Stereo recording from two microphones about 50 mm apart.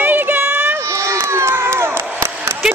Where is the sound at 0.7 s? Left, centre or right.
Right.